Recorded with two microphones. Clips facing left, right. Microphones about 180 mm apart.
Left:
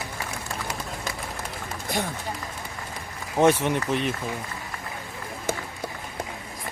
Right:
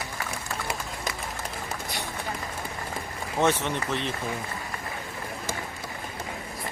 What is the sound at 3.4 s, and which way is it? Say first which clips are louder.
Speech: left 5 dB; 10° left (ahead or behind).